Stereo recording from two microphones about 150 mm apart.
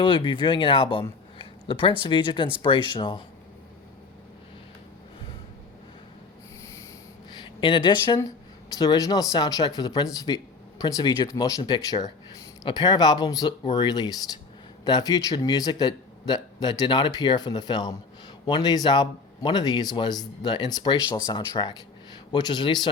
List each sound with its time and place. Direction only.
0.0 s speech: 35° left (ahead or behind)
7.4 s speech: 35° left (ahead or behind)